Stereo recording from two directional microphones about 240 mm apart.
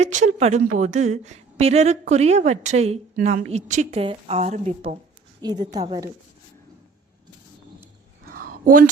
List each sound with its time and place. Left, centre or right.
0.0 s a woman's voice: right
5.4 s a woman's voice: centre
8.3 s a sound: right